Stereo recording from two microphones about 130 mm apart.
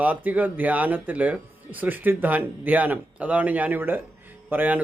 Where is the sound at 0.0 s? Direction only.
10° right (ahead or behind).